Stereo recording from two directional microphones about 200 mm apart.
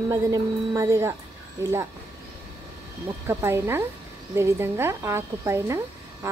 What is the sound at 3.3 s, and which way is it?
Speech, 10° right (ahead or behind).